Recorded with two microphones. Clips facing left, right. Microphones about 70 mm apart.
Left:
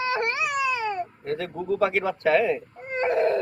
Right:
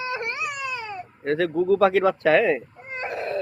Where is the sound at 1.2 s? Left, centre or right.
Right.